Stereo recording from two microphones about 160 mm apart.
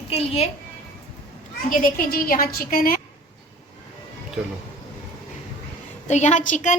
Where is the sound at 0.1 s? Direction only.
40° left (ahead or behind).